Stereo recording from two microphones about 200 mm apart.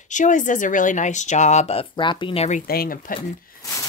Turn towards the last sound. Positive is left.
turn(degrees=15)  # may be behind; listen again after turning